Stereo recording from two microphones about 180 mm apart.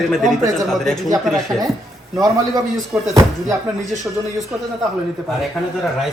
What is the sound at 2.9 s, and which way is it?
Speech, 5° right (ahead or behind).